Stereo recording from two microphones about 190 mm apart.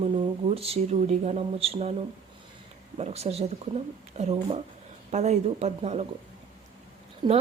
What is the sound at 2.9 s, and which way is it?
Speech, 35° right (ahead or behind).